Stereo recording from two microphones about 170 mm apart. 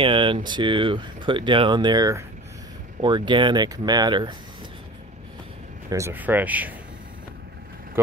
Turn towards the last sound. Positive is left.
turn(degrees=-10)  # may be behind; listen again after turning